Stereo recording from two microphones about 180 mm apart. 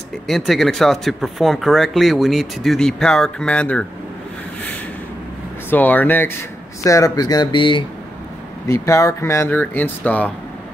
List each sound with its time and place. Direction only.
0.3 s speech: centre (ahead or behind)
5.7 s speech: 10° left (ahead or behind); by 7.8 s 25° left (ahead or behind)
8.6 s speech: 15° left (ahead or behind)